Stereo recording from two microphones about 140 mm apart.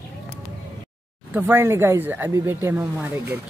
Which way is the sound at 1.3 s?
15° right (ahead or behind).